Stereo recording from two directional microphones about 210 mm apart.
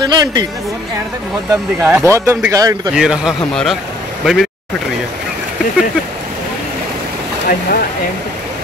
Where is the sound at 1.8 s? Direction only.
10° right (ahead or behind).